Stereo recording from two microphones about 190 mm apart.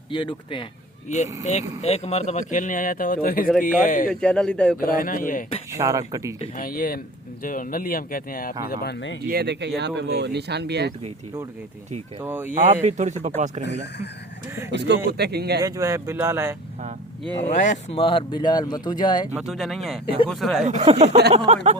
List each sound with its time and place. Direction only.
0.1 s speech: 25° left (ahead or behind)
1.0 s a man's voice: 40° left (ahead or behind)
4.1 s speech: 5° left (ahead or behind)
4.8 s a man's voice: 45° left (ahead or behind)
5.7 s speech: 15° right (ahead or behind)
6.6 s a man's voice: 50° left (ahead or behind); by 9.1 s 65° left (ahead or behind)
9.3 s speech: 60° right (ahead or behind)
12.2 s speech: 10° right (ahead or behind)
12.5 s speech: 40° right (ahead or behind)
14.7 s speech: 65° right (ahead or behind)
15.6 s speech: 15° right (ahead or behind)
17.5 s speech: 40° left (ahead or behind); by 19.3 s 20° left (ahead or behind)
19.3 s speech: centre (ahead or behind)
20.7 s speech: 35° right (ahead or behind)